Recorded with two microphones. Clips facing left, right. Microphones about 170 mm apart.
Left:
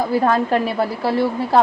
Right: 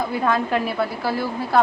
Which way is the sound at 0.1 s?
40° left (ahead or behind).